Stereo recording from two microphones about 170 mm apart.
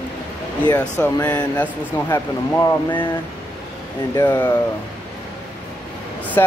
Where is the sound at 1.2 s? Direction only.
15° left (ahead or behind).